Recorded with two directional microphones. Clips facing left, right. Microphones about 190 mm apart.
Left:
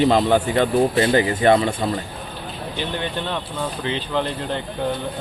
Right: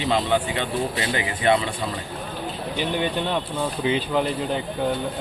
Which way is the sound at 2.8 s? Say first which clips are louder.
Right 2 dB; 10° right (ahead or behind).